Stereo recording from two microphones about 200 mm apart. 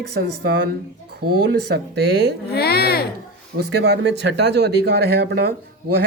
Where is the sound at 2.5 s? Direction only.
50° left (ahead or behind).